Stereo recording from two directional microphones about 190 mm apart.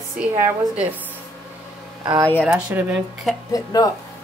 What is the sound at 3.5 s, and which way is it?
Speech, 20° left (ahead or behind).